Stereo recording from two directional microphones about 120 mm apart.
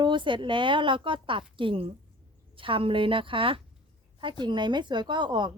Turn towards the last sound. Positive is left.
turn(degrees=-40)  # may be behind; listen again after turning